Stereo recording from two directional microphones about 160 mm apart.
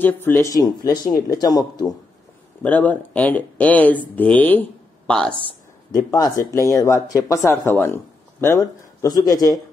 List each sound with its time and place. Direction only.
0.0 s speech: 15° left (ahead or behind)
2.6 s speech: 10° left (ahead or behind)
5.9 s speech: 20° left (ahead or behind)